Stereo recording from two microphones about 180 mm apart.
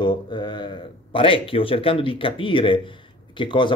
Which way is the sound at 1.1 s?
30° left (ahead or behind).